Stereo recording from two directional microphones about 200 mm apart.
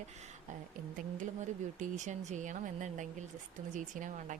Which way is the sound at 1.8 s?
40° right (ahead or behind).